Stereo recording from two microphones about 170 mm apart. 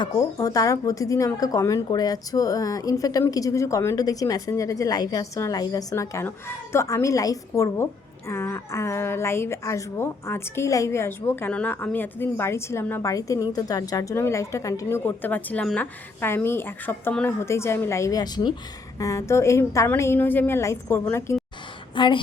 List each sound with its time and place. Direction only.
0.0 s a woman's voice: 20° left (ahead or behind)
21.9 s speech: 30° left (ahead or behind)